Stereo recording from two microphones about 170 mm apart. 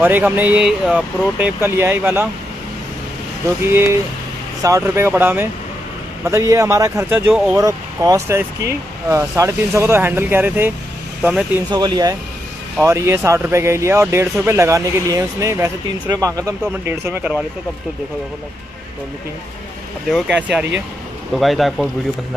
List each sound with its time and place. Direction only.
0.0 s speech: 10° right (ahead or behind)
3.6 s speech: 15° right (ahead or behind)
7.5 s speech: 20° right (ahead or behind)
11.7 s speech: 25° right (ahead or behind)
20.1 s speech: 5° right (ahead or behind)